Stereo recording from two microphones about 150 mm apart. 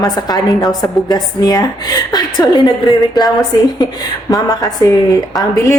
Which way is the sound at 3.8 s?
25° left (ahead or behind).